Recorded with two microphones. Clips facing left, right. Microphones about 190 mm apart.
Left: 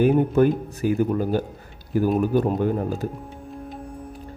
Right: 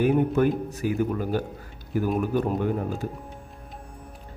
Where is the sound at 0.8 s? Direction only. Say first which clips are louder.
Left 5 dB; 30° left (ahead or behind).